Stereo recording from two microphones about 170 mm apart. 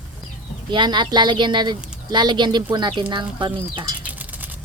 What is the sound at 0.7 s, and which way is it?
A woman's voice, 25° right (ahead or behind).